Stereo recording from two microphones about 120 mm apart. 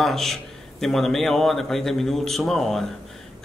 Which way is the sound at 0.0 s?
Centre (ahead or behind).